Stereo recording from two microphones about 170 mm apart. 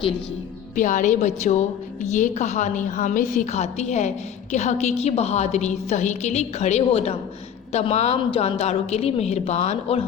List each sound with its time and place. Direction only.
0.8 s a woman's voice: 50° left (ahead or behind)